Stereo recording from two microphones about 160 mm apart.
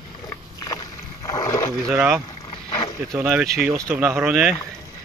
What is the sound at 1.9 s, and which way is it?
Speech, 5° right (ahead or behind).